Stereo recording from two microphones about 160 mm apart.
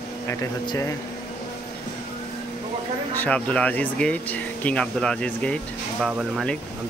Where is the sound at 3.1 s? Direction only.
10° left (ahead or behind).